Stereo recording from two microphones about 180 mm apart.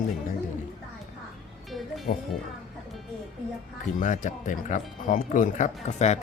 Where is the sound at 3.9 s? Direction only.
45° left (ahead or behind).